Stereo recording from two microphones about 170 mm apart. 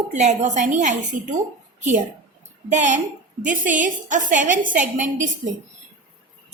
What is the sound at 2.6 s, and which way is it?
A woman's voice, 50° right (ahead or behind).